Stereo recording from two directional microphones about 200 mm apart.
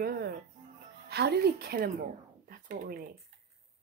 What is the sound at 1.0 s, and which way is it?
Speech, 55° right (ahead or behind).